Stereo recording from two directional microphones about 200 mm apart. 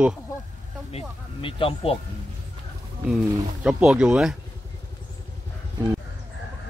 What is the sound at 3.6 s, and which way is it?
Speech, 5° right (ahead or behind).